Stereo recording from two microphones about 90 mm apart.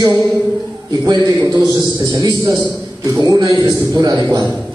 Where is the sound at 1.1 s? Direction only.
35° right (ahead or behind).